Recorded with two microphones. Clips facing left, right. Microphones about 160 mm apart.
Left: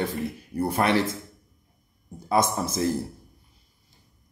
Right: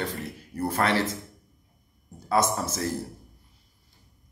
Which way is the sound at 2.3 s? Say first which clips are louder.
Left 1 dB; 10° left (ahead or behind).